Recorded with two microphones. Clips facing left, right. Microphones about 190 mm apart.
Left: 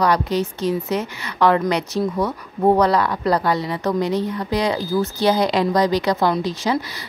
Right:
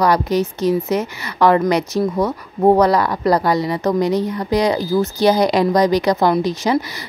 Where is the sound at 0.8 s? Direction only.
45° right (ahead or behind).